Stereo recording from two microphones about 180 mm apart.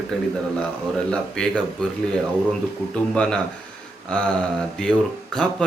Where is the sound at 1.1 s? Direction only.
5° left (ahead or behind).